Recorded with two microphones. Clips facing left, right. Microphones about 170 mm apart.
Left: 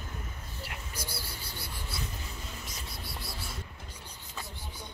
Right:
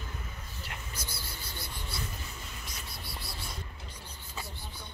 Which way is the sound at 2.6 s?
Centre (ahead or behind).